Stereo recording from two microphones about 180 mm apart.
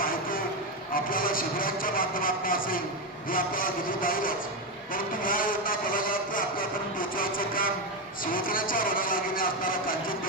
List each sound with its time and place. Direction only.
0.0 s a sound: 50° left (ahead or behind)
0.9 s a man's voice: 50° left (ahead or behind)
3.2 s vehicle: 50° left (ahead or behind)